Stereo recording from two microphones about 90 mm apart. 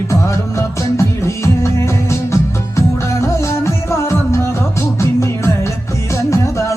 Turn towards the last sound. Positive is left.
turn(degrees=35)  # may be behind; listen again after turning